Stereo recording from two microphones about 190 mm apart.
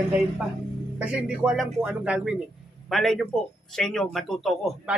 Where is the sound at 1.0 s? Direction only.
5° right (ahead or behind).